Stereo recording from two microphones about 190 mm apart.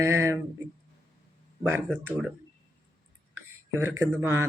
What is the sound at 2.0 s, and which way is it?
Speech, 5° right (ahead or behind).